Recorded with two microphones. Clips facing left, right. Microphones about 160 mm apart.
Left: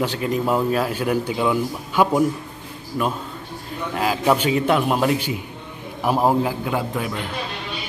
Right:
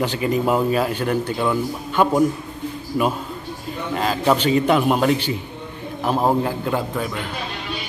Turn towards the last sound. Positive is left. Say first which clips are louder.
# right 1 dB
turn(degrees=10)  # may be behind; listen again after turning